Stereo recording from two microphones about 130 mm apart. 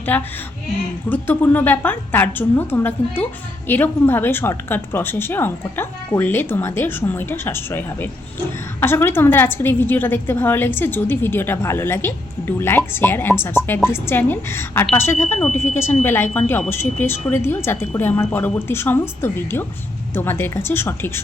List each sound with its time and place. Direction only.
0.1 s a woman's voice: 15° left (ahead or behind)